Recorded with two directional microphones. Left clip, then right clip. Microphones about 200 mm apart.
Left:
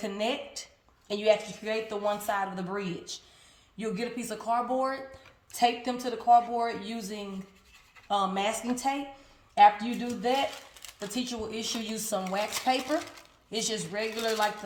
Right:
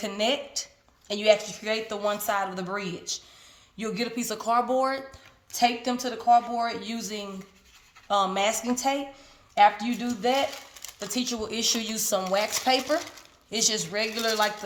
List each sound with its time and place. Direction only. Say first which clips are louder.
0.0 s a woman's voice: right 5 dB; 40° right (ahead or behind)